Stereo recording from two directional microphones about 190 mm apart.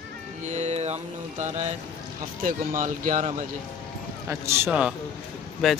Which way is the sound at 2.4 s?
45° right (ahead or behind).